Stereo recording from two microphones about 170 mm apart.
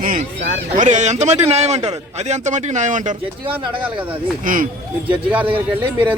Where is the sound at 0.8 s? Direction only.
45° right (ahead or behind).